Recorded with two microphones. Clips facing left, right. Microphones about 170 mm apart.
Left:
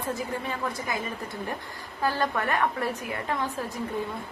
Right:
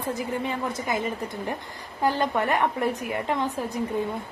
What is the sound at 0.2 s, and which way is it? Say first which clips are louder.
A woman's voice: right 3 dB; 20° right (ahead or behind).